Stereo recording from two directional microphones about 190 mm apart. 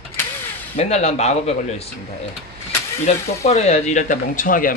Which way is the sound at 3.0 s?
35° left (ahead or behind).